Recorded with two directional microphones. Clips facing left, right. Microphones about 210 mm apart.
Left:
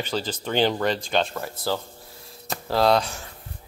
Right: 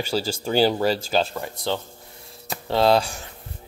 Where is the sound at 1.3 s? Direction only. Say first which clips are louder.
Right 1 dB; centre (ahead or behind).